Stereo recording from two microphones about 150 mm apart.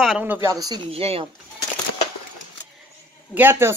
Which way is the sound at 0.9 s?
40° right (ahead or behind).